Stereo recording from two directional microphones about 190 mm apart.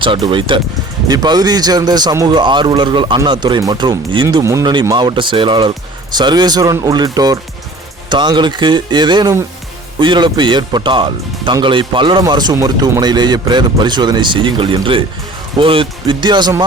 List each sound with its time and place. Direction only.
0.0 s speech: 25° right (ahead or behind)